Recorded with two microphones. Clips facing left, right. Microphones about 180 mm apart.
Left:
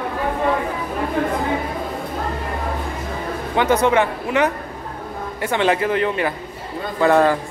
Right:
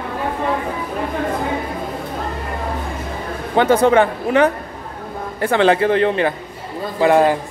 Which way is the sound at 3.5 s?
30° right (ahead or behind).